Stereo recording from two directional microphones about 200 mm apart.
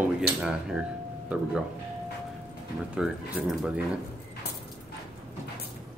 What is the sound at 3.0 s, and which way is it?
Speech, 5° right (ahead or behind).